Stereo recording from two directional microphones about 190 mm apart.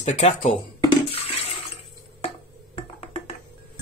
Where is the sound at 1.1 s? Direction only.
30° left (ahead or behind).